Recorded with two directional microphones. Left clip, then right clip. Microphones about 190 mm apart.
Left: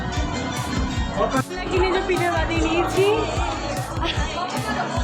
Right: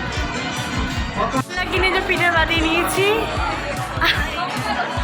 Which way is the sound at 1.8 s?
15° left (ahead or behind).